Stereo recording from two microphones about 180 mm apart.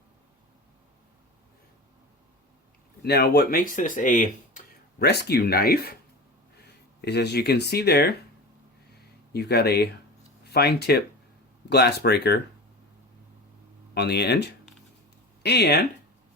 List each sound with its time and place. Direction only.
3.0 s speech: 60° left (ahead or behind); by 4.6 s 45° left (ahead or behind)
4.9 s speech: 65° left (ahead or behind)
7.0 s speech: 65° left (ahead or behind)
9.3 s speech: 65° left (ahead or behind)
13.9 s speech: 65° left (ahead or behind)